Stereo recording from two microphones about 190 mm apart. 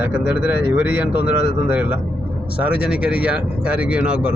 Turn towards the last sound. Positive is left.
turn(degrees=-5)  # may be behind; listen again after turning